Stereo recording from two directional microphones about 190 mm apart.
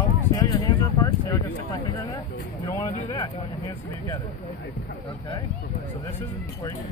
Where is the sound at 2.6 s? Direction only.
15° left (ahead or behind).